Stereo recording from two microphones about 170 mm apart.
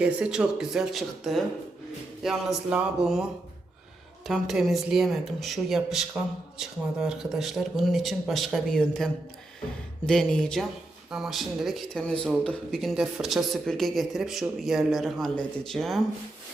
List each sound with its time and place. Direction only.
0.0 s speech: 5° right (ahead or behind)
4.3 s speech: centre (ahead or behind)
10.1 s speech: 5° left (ahead or behind)